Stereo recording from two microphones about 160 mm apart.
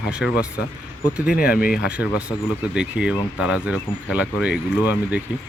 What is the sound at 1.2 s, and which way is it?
Speech, 70° left (ahead or behind).